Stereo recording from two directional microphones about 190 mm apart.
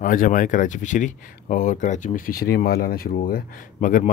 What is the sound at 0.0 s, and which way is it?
Speech, 45° left (ahead or behind).